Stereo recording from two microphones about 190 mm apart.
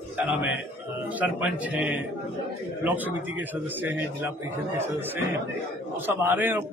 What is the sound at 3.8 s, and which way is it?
A man's voice, 10° right (ahead or behind).